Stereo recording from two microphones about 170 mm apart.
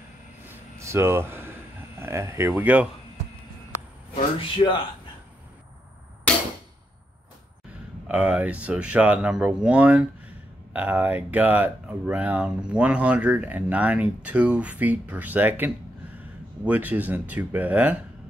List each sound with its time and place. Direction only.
0.5 s a sound: 15° right (ahead or behind)
4.1 s a man's voice: 30° left (ahead or behind)
8.1 s speech: 10° right (ahead or behind)